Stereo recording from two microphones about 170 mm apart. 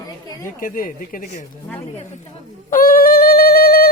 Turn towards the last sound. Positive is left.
turn(degrees=65)  # may be behind; listen again after turning